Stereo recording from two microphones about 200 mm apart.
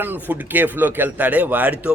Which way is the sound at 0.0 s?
10° right (ahead or behind).